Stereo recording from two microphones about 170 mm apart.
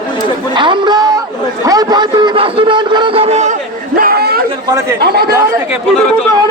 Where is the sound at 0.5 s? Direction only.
25° right (ahead or behind).